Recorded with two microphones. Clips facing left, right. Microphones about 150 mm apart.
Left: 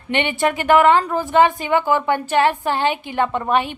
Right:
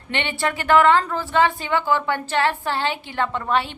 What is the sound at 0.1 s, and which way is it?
A woman's voice, 15° left (ahead or behind).